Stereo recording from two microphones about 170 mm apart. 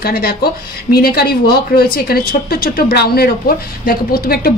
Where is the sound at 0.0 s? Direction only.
65° left (ahead or behind).